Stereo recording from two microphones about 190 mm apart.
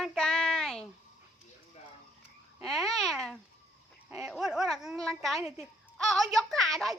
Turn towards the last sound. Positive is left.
turn(degrees=0)  # may be behind; listen again after turning